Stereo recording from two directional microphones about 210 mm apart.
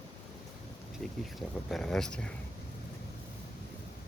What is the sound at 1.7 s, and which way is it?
Speech, centre (ahead or behind).